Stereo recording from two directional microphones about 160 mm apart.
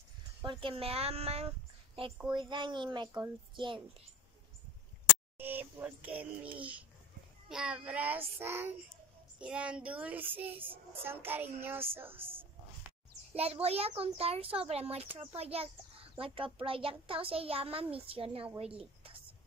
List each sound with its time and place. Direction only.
0.5 s a child's voice: 35° right (ahead or behind)
2.2 s a woman's voice: 30° right (ahead or behind)
5.4 s a child's voice: 10° right (ahead or behind)
12.3 s a sound: 10° right (ahead or behind)
13.3 s a child's voice: 40° right (ahead or behind)